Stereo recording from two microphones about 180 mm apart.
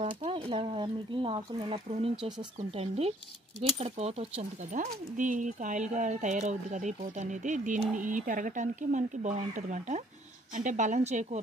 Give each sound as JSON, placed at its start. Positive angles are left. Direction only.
{"t": 0.0, "sound": "speech", "side_deg": -30}
{"t": 3.8, "sound": "speech", "side_deg": -35}